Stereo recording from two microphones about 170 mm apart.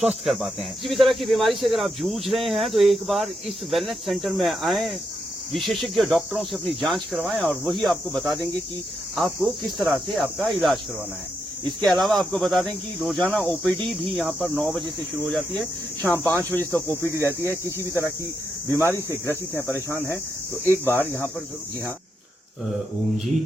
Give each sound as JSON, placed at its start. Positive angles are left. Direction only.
{"t": 0.0, "sound": "speech", "side_deg": -5}
{"t": 11.8, "sound": "speech", "side_deg": 0}